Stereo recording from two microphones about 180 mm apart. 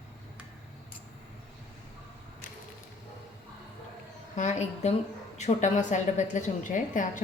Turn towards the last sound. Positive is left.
turn(degrees=45)  # may be behind; listen again after turning